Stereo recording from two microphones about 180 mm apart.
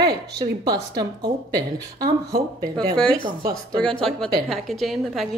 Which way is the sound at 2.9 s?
5° left (ahead or behind).